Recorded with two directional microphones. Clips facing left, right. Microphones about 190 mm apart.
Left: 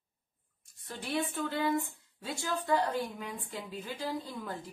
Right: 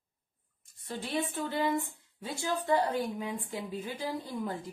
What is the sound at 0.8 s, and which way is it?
A woman's voice, 20° right (ahead or behind).